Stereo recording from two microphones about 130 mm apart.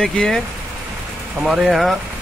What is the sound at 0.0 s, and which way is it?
Speech, 5° left (ahead or behind).